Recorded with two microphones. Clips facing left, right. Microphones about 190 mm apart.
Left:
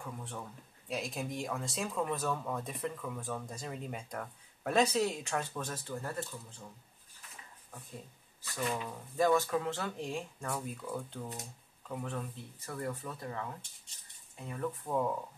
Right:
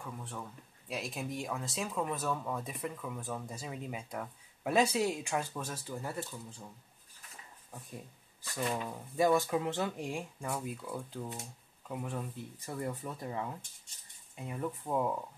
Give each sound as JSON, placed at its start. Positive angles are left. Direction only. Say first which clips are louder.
{"t": 0.0, "sound": "speech", "louder": "even", "side_deg": 0}
{"t": 9.1, "sound": "speech", "louder": "even", "side_deg": -10}